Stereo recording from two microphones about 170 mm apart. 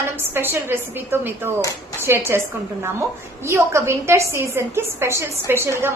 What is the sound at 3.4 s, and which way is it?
A woman's voice, 15° right (ahead or behind).